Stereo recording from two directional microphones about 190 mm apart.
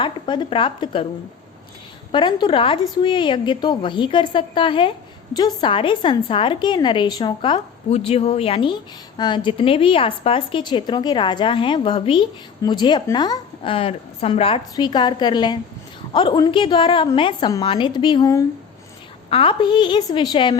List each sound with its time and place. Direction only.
0.0 s a woman's voice: 25° left (ahead or behind)
2.1 s a woman's voice: 25° left (ahead or behind)